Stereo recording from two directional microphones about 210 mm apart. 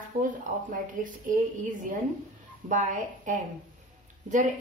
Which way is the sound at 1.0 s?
40° right (ahead or behind).